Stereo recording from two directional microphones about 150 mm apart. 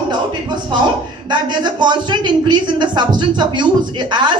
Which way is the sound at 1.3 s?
30° right (ahead or behind).